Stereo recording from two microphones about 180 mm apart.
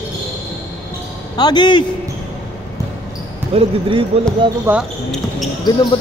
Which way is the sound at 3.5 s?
30° right (ahead or behind).